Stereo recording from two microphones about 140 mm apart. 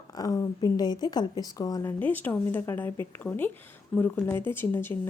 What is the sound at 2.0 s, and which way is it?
A woman's voice, 15° left (ahead or behind).